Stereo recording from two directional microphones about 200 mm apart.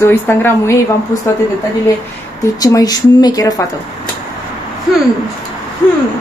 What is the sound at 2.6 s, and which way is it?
Speech, 20° left (ahead or behind).